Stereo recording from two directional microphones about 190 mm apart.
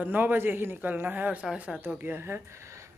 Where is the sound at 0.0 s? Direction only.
10° right (ahead or behind).